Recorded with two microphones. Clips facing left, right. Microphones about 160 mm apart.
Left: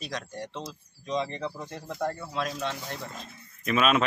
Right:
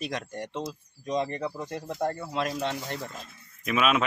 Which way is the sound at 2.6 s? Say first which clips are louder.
Right 2 dB; 55° right (ahead or behind).